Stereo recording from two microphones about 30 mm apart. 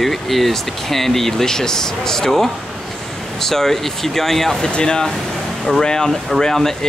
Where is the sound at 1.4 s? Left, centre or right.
Centre.